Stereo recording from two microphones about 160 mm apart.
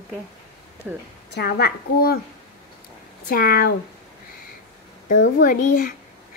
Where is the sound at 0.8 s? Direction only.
5° right (ahead or behind).